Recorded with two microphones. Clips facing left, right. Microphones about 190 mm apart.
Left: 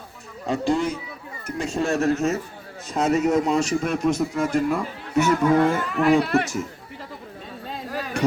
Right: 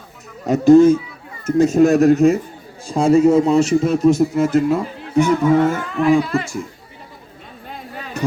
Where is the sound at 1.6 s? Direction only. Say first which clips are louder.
Right 13 dB; 20° right (ahead or behind).